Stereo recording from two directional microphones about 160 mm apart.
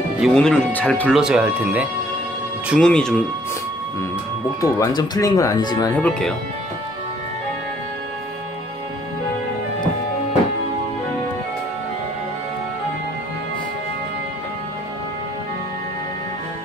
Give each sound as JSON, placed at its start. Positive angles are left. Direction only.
{"t": 0.2, "sound": "speech", "side_deg": 5}
{"t": 1.2, "sound": "speech", "side_deg": -5}
{"t": 2.7, "sound": "speech", "side_deg": 5}
{"t": 4.6, "sound": "speech", "side_deg": 20}
{"t": 5.9, "sound": "speech", "side_deg": 5}